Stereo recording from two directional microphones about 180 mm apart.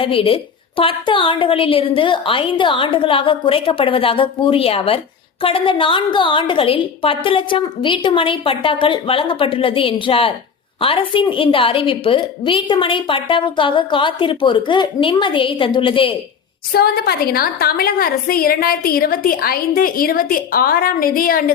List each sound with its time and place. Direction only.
0.0 s a woman's voice: 30° left (ahead or behind)
16.7 s a woman's voice: 60° left (ahead or behind)